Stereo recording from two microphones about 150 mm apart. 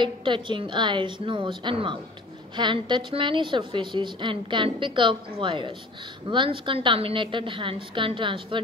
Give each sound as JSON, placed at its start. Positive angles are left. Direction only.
{"t": 0.0, "sound": "a woman's voice", "side_deg": -30}